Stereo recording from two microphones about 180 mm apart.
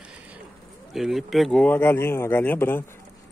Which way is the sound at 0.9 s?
Centre (ahead or behind).